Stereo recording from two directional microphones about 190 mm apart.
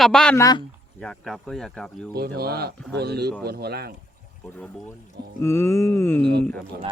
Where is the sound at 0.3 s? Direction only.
20° left (ahead or behind).